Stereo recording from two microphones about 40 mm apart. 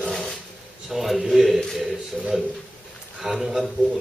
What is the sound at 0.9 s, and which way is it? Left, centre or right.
Speech, centre.